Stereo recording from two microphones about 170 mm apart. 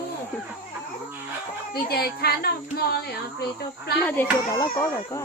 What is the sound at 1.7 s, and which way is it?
Speech, 65° left (ahead or behind).